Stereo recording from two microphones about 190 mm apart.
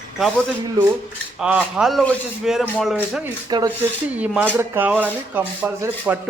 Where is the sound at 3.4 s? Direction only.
20° right (ahead or behind).